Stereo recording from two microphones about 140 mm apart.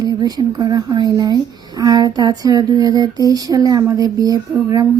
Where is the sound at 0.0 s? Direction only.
30° right (ahead or behind).